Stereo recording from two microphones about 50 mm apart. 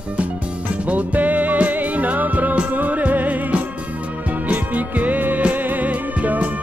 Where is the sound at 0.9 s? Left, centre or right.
Right.